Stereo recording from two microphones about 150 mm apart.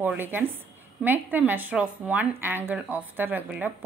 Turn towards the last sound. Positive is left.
turn(degrees=-10)  # may be behind; listen again after turning